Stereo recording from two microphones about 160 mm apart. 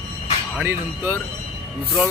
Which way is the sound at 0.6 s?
15° right (ahead or behind).